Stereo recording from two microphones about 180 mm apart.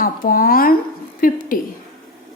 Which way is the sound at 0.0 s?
50° left (ahead or behind).